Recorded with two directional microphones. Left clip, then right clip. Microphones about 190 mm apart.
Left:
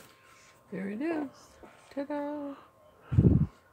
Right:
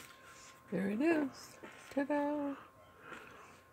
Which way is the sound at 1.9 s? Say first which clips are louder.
Even; 25° right (ahead or behind).